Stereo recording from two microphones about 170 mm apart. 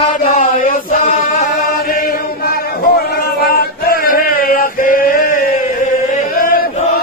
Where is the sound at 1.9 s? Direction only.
60° left (ahead or behind).